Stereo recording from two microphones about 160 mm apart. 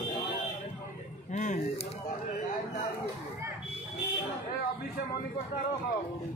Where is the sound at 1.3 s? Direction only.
50° left (ahead or behind).